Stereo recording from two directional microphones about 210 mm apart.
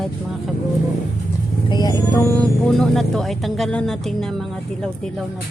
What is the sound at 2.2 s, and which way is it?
Speech, 5° left (ahead or behind).